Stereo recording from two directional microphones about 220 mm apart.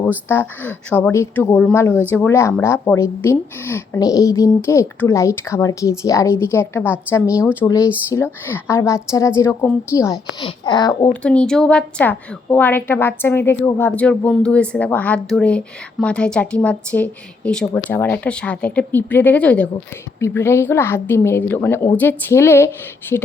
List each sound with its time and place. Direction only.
0.3 s a woman's voice: 10° left (ahead or behind)
11.1 s a woman's voice: 5° left (ahead or behind)